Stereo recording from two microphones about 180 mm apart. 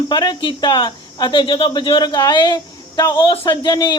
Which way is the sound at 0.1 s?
25° left (ahead or behind).